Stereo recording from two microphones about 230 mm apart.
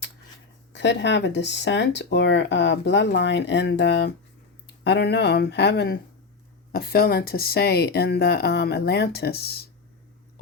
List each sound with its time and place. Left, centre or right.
0.7 s speech: left